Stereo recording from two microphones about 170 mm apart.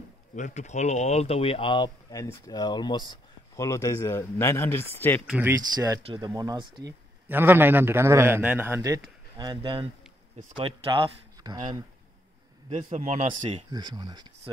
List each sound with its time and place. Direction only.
0.4 s speech: 45° left (ahead or behind); by 5.2 s 10° left (ahead or behind)
5.2 s speech: 5° right (ahead or behind)
5.6 s speech: 20° right (ahead or behind)
7.2 s a man's voice: 10° right (ahead or behind)
12.6 s speech: 45° right (ahead or behind)
13.7 s speech: 25° right (ahead or behind)